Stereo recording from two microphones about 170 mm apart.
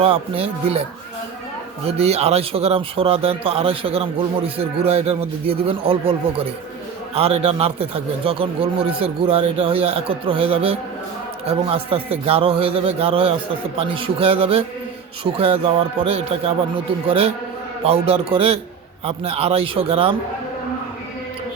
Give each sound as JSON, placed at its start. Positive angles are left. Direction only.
{"t": 0.0, "sound": "speech", "side_deg": -35}
{"t": 1.9, "sound": "speech", "side_deg": -35}